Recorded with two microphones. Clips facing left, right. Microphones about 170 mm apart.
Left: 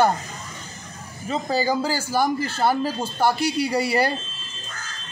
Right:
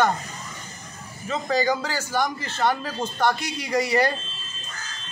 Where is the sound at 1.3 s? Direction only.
30° left (ahead or behind).